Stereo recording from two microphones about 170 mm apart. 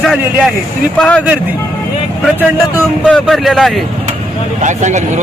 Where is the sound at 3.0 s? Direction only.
5° left (ahead or behind).